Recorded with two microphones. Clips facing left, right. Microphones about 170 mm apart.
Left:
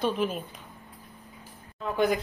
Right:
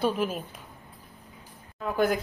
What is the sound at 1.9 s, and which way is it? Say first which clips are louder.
Speech: even; centre (ahead or behind).